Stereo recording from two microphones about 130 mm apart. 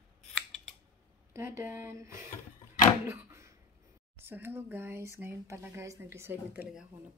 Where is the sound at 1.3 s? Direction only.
20° right (ahead or behind).